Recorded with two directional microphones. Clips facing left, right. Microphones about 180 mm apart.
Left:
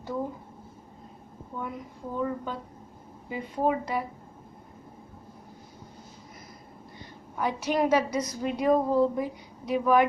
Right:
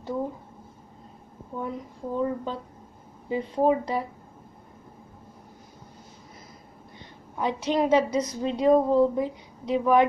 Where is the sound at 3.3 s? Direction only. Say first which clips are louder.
Right 5 dB; 30° right (ahead or behind).